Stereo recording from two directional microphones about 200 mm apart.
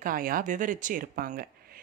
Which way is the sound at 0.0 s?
45° right (ahead or behind).